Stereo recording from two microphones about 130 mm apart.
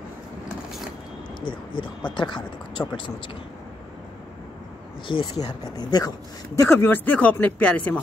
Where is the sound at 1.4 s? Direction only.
40° left (ahead or behind).